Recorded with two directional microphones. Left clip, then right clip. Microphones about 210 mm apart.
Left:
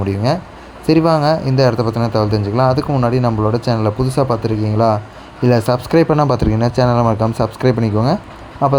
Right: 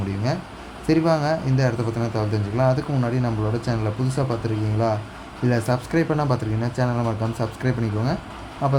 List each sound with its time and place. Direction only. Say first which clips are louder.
0.9 s a man's voice: left 7 dB; 25° left (ahead or behind)